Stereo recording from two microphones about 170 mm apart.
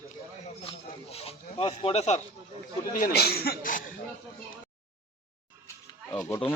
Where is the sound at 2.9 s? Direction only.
65° left (ahead or behind).